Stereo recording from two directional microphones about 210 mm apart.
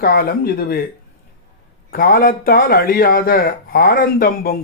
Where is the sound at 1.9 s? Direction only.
45° left (ahead or behind).